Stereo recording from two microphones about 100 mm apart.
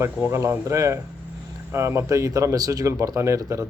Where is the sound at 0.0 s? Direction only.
25° right (ahead or behind).